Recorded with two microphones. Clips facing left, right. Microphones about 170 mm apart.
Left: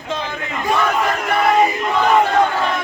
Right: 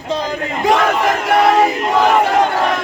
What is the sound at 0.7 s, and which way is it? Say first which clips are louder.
Battle cry: right 4 dB; 90° right.